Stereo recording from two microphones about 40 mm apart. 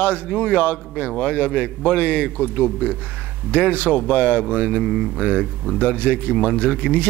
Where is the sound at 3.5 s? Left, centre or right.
Left.